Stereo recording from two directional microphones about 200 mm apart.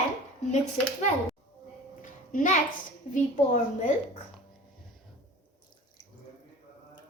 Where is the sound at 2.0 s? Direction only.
40° left (ahead or behind).